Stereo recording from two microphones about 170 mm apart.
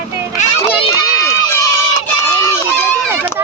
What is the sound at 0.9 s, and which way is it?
Run, 15° left (ahead or behind).